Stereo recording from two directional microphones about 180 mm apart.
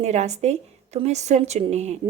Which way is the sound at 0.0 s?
40° right (ahead or behind).